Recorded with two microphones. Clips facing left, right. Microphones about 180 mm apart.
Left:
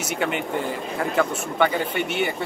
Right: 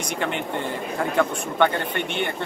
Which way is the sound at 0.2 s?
5° left (ahead or behind).